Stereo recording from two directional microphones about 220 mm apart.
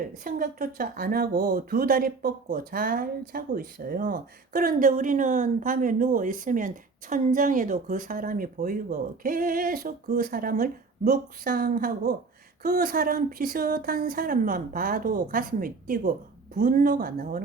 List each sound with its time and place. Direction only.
0.3 s speech: 40° right (ahead or behind)